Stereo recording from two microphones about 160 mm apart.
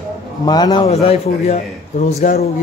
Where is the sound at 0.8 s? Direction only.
40° left (ahead or behind).